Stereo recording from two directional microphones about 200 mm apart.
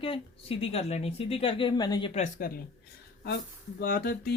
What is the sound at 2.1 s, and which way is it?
Speech, 40° left (ahead or behind).